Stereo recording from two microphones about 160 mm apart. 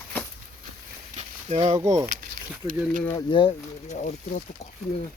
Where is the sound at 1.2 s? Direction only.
35° right (ahead or behind).